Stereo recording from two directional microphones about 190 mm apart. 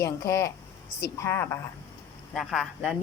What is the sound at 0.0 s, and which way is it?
A woman's voice, 15° left (ahead or behind).